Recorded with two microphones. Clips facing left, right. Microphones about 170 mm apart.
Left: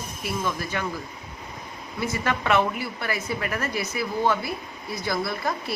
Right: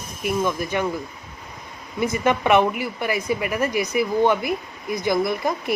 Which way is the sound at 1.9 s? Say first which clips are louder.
Right 6 dB; 20° right (ahead or behind).